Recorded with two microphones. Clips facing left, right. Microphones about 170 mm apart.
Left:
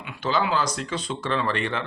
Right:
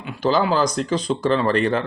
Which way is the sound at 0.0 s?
35° right (ahead or behind).